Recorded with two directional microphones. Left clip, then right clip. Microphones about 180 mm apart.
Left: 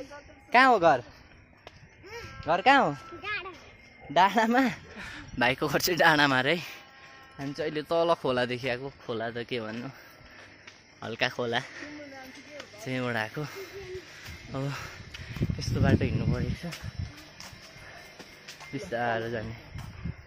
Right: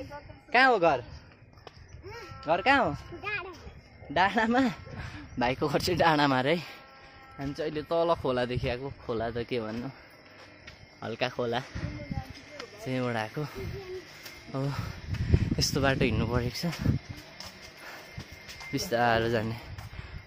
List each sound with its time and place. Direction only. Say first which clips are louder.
0.5 s a man's voice: left 2 dB; 35° left (ahead or behind)
2.4 s a man's voice: left 2 dB; 40° left (ahead or behind)
3.2 s music: even; 15° left (ahead or behind)
4.1 s a man's voice: left 3 dB; 35° left (ahead or behind)
4.6 s speech: left 1 dB; centre (ahead or behind)
7.3 s speech: left 1 dB; 15° left (ahead or behind)
9.0 s speech: right 1 dB; 10° right (ahead or behind)
11.0 s speech: left 1 dB; 5° right (ahead or behind)
15.7 s speech: right 1 dB; 35° right (ahead or behind)
18.7 s speech: right 4 dB; 30° right (ahead or behind)